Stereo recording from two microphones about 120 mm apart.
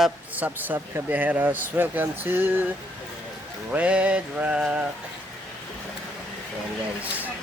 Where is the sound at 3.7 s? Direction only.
10° right (ahead or behind).